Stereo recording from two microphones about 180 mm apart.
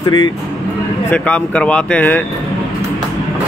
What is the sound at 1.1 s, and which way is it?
Speech, 5° left (ahead or behind).